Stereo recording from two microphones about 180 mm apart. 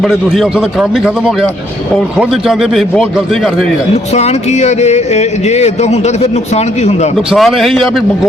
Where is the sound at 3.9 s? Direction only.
35° left (ahead or behind).